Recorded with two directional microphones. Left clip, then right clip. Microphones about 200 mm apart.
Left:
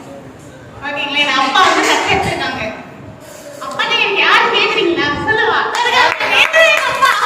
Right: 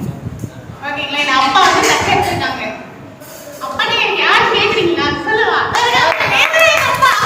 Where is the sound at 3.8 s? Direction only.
15° left (ahead or behind).